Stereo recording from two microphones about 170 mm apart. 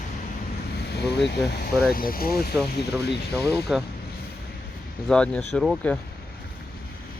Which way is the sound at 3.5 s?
5° right (ahead or behind).